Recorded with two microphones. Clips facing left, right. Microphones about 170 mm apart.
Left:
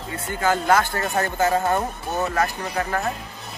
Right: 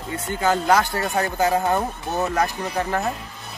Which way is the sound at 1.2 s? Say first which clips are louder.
Even; 15° right (ahead or behind).